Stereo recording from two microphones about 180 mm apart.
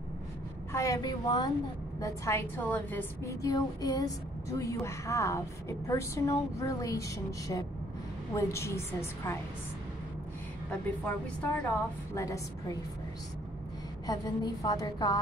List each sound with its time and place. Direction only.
0.7 s a woman's voice: 20° left (ahead or behind)
11.6 s a woman's voice: 15° left (ahead or behind)
14.0 s a woman's voice: 20° left (ahead or behind)